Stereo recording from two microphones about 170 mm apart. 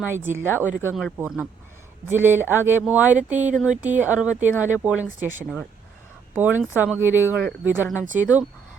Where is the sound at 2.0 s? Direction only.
10° right (ahead or behind).